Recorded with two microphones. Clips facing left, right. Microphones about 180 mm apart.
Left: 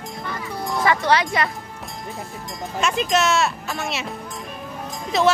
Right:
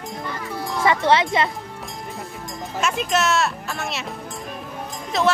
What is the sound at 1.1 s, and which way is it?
Speech, 25° right (ahead or behind).